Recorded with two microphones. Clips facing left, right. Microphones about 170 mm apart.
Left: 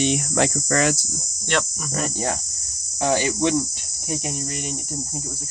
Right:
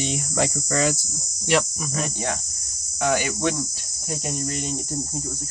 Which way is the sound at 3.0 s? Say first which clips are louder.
Left 2 dB; 30° left (ahead or behind).